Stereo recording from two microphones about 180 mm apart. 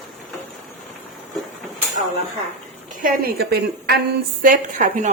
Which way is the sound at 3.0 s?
55° right (ahead or behind).